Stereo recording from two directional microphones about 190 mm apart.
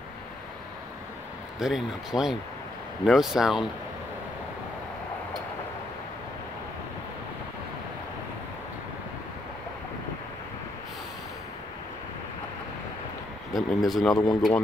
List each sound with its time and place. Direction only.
1.6 s speech: 5° right (ahead or behind)
13.5 s speech: 20° left (ahead or behind)
13.8 s speech: centre (ahead or behind)
14.1 s speech: 20° left (ahead or behind)